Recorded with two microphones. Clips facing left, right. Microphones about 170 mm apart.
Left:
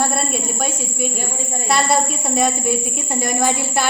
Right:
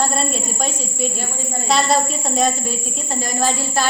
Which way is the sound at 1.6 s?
5° left (ahead or behind).